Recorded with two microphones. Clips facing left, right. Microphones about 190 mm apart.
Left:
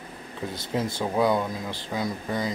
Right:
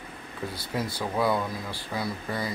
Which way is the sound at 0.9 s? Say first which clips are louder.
Left 3 dB; 20° left (ahead or behind).